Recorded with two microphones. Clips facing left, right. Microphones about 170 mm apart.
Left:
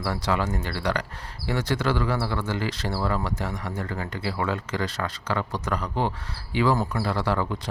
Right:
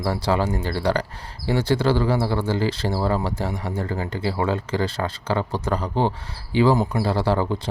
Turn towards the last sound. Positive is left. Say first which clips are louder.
# right 4 dB
turn(degrees=-30)  # may be behind; listen again after turning